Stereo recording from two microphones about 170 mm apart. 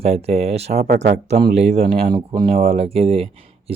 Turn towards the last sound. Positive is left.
turn(degrees=-35)  # may be behind; listen again after turning